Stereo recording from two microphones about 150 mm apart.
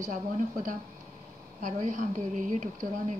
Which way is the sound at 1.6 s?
50° right (ahead or behind).